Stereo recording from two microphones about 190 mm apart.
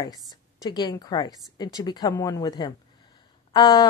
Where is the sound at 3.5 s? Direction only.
20° left (ahead or behind).